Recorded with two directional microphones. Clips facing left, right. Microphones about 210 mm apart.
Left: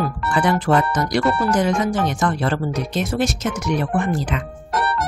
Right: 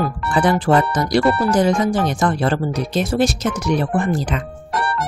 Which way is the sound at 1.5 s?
35° right (ahead or behind).